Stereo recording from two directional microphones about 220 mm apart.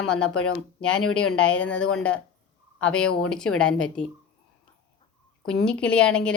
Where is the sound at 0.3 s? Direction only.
75° left (ahead or behind).